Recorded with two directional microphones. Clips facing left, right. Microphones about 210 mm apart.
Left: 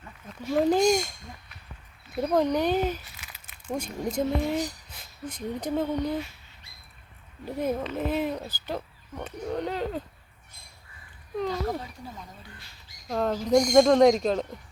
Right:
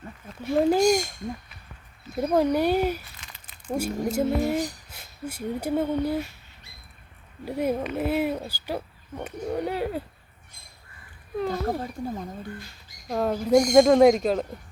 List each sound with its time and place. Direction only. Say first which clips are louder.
0.5 s speech: right 2 dB; 10° right (ahead or behind)
2.1 s speech: right 2 dB; 5° right (ahead or behind)
3.2 s crumpling: right 1 dB; 5° left (ahead or behind)
3.7 s speech: right 4 dB; 10° right (ahead or behind)
7.4 s speech: right 2 dB; 10° right (ahead or behind)
11.4 s speech: right 3 dB; 50° right (ahead or behind)
13.1 s speech: right 2 dB; 10° right (ahead or behind)